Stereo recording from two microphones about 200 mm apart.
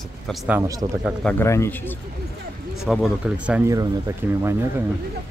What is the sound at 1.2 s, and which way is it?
Speech, 10° left (ahead or behind).